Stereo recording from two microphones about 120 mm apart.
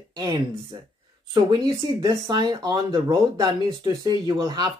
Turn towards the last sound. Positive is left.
turn(degrees=-30)  # may be behind; listen again after turning